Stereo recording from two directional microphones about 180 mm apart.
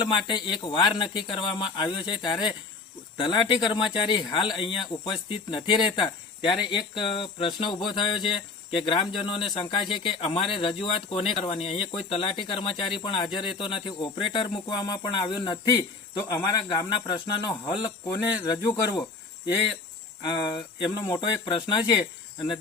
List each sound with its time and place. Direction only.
0.0 s speech: 25° left (ahead or behind)
20.2 s speech: 25° left (ahead or behind)